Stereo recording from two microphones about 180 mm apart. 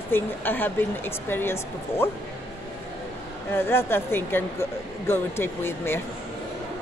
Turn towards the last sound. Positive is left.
turn(degrees=15)  # may be behind; listen again after turning